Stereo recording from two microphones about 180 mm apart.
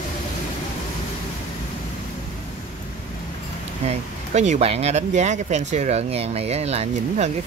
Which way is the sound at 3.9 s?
40° right (ahead or behind).